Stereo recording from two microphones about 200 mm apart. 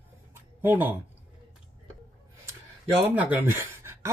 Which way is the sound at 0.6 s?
10° right (ahead or behind).